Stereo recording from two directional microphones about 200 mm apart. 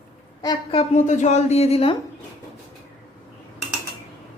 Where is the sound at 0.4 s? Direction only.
30° left (ahead or behind).